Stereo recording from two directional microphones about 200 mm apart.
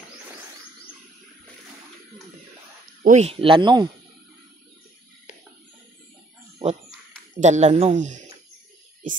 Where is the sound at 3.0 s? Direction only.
35° right (ahead or behind).